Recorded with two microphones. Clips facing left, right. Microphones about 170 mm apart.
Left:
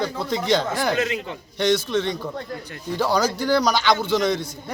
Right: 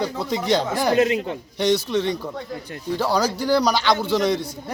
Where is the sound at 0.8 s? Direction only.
40° right (ahead or behind).